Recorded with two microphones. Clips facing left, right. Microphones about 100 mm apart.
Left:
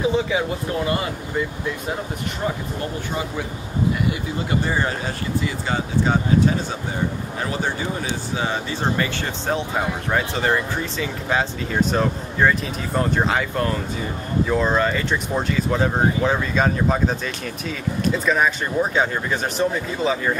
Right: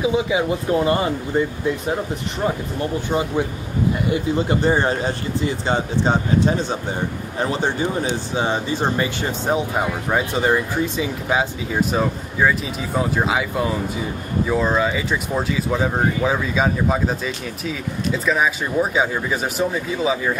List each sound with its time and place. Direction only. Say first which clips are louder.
0.0 s speech: right 1 dB; 15° right (ahead or behind)
3.1 s speech: right 6 dB; 25° right (ahead or behind); by 20.3 s 5° right (ahead or behind)